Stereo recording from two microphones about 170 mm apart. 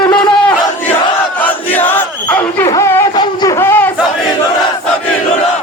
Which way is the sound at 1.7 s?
10° left (ahead or behind).